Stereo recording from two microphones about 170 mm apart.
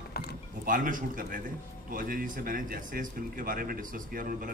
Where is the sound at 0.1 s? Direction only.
65° left (ahead or behind).